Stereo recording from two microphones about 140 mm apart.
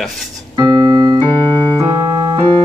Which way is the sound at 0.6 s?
30° right (ahead or behind).